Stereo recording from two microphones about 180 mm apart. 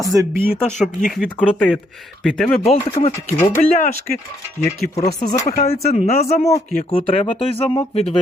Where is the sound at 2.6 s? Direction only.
35° left (ahead or behind).